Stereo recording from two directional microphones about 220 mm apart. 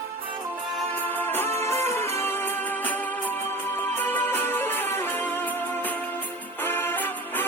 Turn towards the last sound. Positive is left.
turn(degrees=10)  # may be behind; listen again after turning